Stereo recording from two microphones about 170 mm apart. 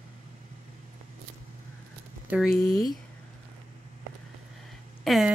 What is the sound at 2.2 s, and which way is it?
Speech, 5° right (ahead or behind).